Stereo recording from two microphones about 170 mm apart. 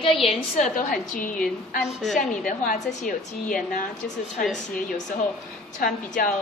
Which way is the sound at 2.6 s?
50° left (ahead or behind).